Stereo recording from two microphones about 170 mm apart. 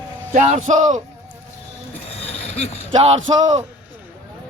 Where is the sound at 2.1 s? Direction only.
35° left (ahead or behind).